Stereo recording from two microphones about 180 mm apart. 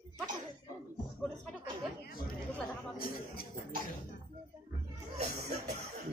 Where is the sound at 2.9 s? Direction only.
55° left (ahead or behind).